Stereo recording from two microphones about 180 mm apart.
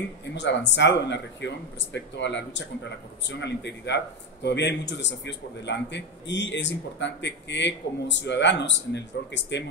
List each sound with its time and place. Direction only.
0.3 s speech: 80° left